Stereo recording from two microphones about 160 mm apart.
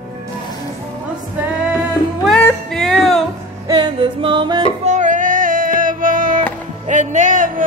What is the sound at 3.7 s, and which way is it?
Music, 30° right (ahead or behind).